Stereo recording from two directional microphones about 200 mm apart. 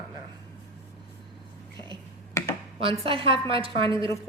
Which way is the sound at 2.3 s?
15° left (ahead or behind).